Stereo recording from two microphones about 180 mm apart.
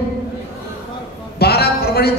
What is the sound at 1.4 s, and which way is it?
Speech, 60° left (ahead or behind).